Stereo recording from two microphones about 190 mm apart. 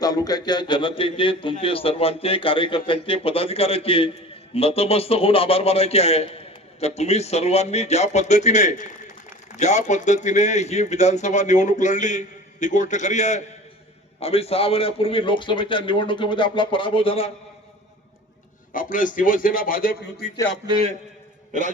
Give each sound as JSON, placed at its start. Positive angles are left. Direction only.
{"t": 0.0, "sound": "a man's voice", "side_deg": 20}
{"t": 18.7, "sound": "a man's voice", "side_deg": 45}
{"t": 20.7, "sound": "a man's voice", "side_deg": -30}